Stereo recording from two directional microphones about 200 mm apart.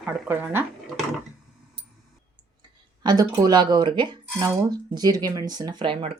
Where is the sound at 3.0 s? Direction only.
20° right (ahead or behind).